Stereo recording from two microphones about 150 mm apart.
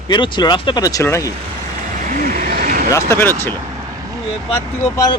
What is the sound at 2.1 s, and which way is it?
Vehicle, 65° right (ahead or behind).